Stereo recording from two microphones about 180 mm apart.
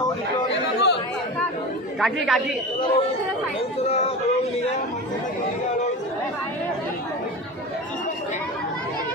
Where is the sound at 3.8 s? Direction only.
35° left (ahead or behind).